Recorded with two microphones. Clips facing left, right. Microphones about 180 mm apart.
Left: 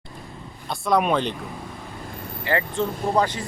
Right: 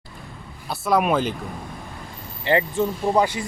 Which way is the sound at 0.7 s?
5° right (ahead or behind).